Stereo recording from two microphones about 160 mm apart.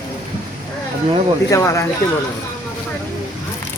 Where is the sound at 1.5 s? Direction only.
20° left (ahead or behind).